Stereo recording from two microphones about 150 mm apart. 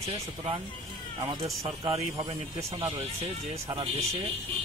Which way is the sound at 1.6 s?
40° right (ahead or behind).